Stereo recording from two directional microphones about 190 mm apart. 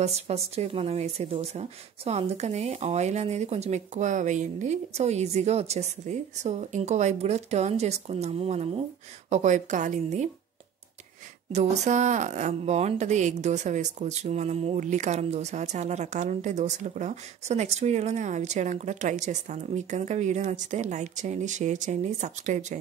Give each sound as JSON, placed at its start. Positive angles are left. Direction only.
{"t": 0.0, "sound": "a woman's voice", "side_deg": -35}
{"t": 11.5, "sound": "a woman's voice", "side_deg": -35}